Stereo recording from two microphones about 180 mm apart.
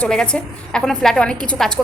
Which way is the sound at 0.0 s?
5° left (ahead or behind).